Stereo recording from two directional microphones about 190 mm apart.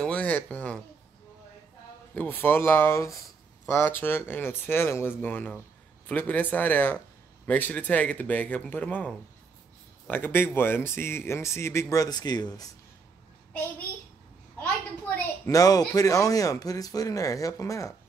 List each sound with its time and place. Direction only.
0.0 s a sound: 5° left (ahead or behind)
2.1 s speech: 10° left (ahead or behind)
15.4 s speech: 20° left (ahead or behind)